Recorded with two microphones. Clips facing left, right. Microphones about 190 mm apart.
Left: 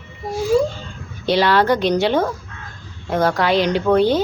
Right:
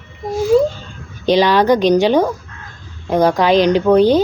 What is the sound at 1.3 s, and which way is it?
A woman's voice, 15° right (ahead or behind).